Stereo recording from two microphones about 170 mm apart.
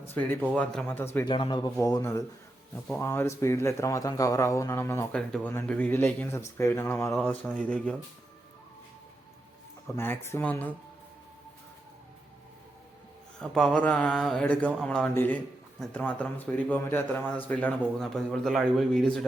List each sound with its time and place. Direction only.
0.1 s a man's voice: 10° left (ahead or behind)
1.2 s a man's voice: 25° left (ahead or behind)
7.2 s mantra: 5° left (ahead or behind)
9.8 s a man's voice: 10° left (ahead or behind)
13.4 s mantra: centre (ahead or behind)
14.8 s a man's voice: 5° left (ahead or behind)